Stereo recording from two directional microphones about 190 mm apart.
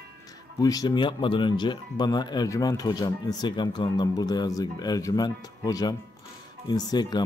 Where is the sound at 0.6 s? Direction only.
20° left (ahead or behind).